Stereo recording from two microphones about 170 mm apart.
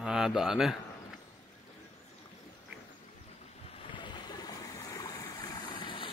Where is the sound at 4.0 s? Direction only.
25° left (ahead or behind).